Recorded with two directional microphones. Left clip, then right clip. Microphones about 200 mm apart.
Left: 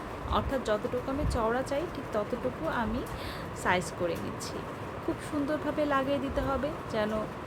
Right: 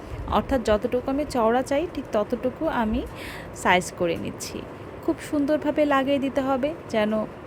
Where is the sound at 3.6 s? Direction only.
40° right (ahead or behind).